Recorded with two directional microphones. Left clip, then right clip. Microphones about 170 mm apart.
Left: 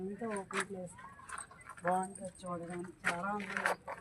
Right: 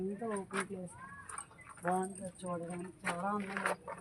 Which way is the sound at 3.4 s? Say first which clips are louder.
Left 1 dB; 90° left.